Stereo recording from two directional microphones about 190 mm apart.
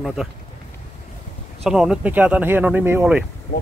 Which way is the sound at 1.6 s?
5° right (ahead or behind).